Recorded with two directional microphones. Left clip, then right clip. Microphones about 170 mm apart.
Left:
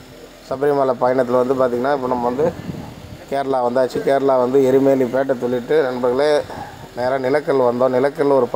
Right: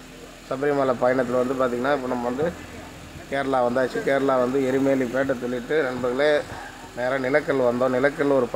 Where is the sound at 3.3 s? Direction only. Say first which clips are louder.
Left 4 dB; 20° left (ahead or behind).